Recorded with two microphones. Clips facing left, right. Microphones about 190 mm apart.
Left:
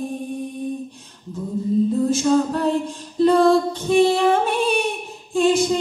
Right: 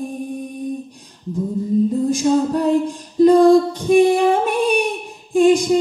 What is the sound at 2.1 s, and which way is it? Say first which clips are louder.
Music: right 2 dB; 15° right (ahead or behind).